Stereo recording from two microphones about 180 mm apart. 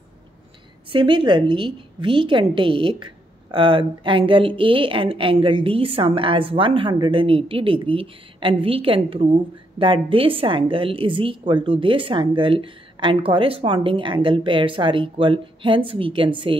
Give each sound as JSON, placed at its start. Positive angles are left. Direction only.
{"t": 0.9, "sound": "a woman's voice", "side_deg": -25}